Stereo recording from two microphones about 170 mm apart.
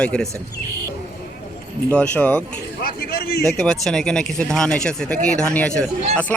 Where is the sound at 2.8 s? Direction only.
60° left (ahead or behind).